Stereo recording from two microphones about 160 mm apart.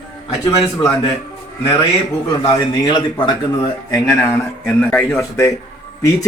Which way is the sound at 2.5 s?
30° left (ahead or behind).